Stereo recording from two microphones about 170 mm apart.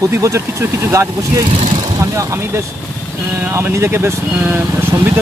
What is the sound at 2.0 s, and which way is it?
Speech, 20° right (ahead or behind).